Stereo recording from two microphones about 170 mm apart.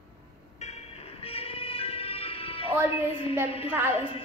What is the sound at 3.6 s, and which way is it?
Speech, 15° right (ahead or behind).